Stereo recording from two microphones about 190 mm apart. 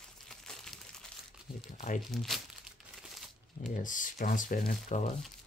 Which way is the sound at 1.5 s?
25° left (ahead or behind).